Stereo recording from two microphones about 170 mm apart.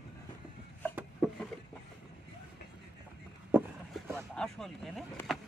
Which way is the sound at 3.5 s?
10° right (ahead or behind).